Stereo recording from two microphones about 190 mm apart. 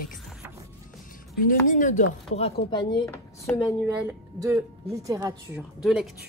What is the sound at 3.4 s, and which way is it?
Speech, 10° left (ahead or behind).